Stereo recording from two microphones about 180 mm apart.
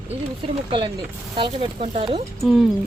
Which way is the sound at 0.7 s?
30° right (ahead or behind).